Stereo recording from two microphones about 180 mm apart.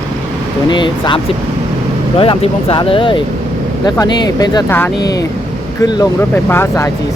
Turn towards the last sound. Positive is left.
turn(degrees=15)  # may be behind; listen again after turning